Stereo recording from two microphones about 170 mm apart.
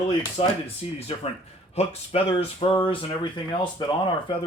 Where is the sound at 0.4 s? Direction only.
35° left (ahead or behind).